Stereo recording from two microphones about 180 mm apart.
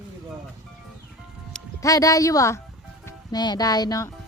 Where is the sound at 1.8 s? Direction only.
20° left (ahead or behind).